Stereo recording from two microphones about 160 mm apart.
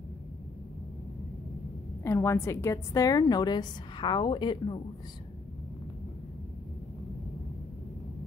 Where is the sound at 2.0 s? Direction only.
15° left (ahead or behind).